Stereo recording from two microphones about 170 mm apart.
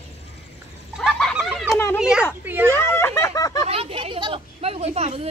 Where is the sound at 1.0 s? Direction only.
Centre (ahead or behind).